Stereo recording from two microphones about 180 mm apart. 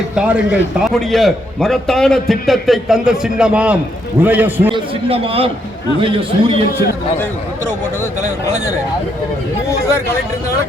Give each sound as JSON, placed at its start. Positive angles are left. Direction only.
{"t": 0.2, "sound": "a man's voice", "side_deg": -5}
{"t": 4.7, "sound": "a man's voice", "side_deg": -30}